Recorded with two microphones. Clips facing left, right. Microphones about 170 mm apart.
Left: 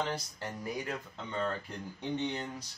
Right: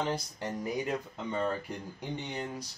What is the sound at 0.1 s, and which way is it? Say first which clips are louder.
Speech: right 4 dB; 20° right (ahead or behind).